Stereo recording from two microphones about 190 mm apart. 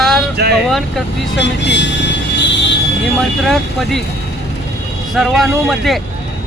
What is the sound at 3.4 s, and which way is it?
Speech, centre (ahead or behind).